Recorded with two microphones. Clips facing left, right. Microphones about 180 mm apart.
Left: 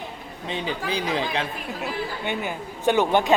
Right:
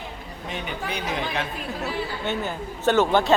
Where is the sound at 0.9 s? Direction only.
30° left (ahead or behind).